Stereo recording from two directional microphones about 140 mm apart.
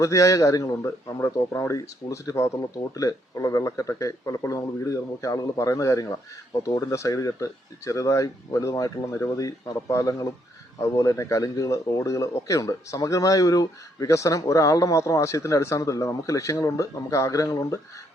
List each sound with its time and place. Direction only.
0.0 s a man's voice: 20° left (ahead or behind)